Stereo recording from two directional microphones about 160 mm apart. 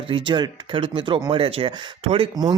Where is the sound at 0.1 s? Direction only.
30° right (ahead or behind).